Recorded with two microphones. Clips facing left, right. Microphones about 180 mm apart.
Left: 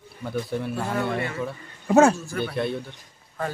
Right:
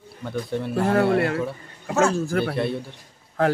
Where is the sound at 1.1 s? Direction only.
70° right (ahead or behind).